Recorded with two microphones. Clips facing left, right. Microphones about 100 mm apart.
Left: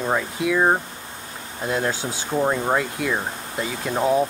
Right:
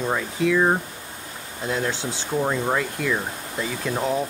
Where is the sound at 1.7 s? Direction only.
40° left (ahead or behind).